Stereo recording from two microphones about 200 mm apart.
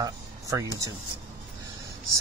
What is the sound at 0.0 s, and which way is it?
Speech, 15° right (ahead or behind).